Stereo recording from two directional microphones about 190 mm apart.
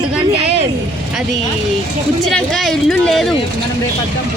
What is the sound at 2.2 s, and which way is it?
Speech, centre (ahead or behind).